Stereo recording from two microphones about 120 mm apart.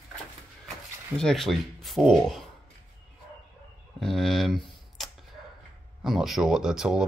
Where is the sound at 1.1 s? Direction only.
5° left (ahead or behind).